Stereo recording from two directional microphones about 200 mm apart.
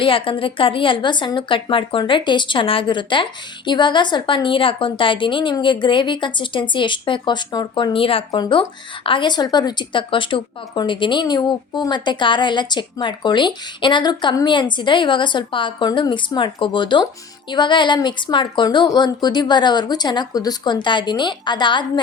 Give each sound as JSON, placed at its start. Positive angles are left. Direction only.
{"t": 0.0, "sound": "speech", "side_deg": 25}